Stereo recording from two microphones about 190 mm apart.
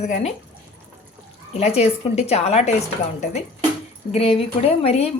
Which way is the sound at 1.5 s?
35° left (ahead or behind).